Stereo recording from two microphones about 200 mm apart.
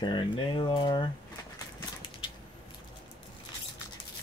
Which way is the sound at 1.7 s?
25° left (ahead or behind).